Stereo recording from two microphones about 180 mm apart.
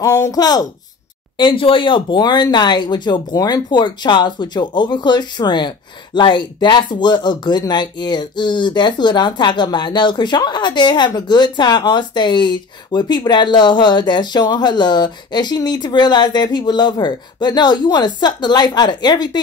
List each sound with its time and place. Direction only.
0.0 s speech: 20° left (ahead or behind)